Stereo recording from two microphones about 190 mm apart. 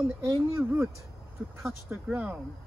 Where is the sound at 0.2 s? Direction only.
10° right (ahead or behind).